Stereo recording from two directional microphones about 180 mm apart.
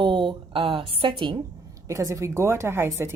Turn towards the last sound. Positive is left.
turn(degrees=-15)  # may be behind; listen again after turning